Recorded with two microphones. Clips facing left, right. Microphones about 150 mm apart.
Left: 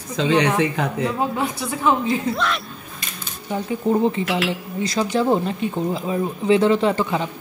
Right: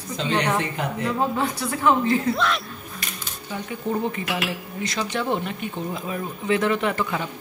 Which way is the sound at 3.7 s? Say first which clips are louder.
Left 7 dB; 30° left (ahead or behind).